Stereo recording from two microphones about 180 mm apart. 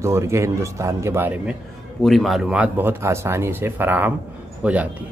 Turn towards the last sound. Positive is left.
turn(degrees=-10)  # may be behind; listen again after turning